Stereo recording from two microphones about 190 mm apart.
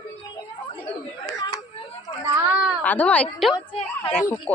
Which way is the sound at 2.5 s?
5° right (ahead or behind).